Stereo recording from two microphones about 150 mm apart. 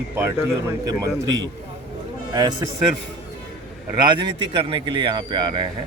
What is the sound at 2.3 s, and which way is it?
Speech, 30° right (ahead or behind).